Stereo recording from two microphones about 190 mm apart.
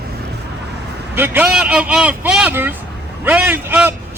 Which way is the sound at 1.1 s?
10° right (ahead or behind).